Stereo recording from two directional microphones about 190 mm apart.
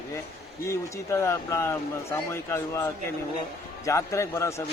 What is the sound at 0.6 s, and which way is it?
Speech, 15° left (ahead or behind).